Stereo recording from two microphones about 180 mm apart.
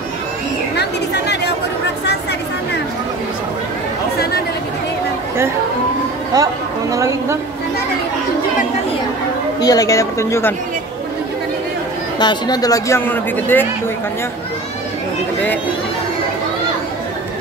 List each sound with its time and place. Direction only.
0.7 s chatter: 70° left (ahead or behind)
6.3 s speech: 20° right (ahead or behind)
9.6 s speech: 20° left (ahead or behind)
12.2 s speech: 25° left (ahead or behind)